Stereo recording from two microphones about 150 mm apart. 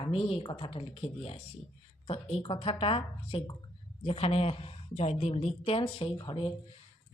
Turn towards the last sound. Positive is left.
turn(degrees=35)  # may be behind; listen again after turning